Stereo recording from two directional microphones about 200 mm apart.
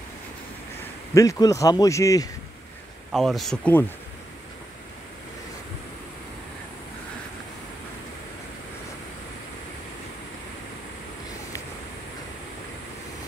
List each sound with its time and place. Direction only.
1.1 s a man's voice: 15° left (ahead or behind)
3.1 s speech: centre (ahead or behind)